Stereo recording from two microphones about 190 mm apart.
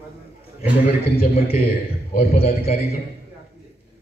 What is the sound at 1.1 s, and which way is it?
A man's voice, 30° left (ahead or behind).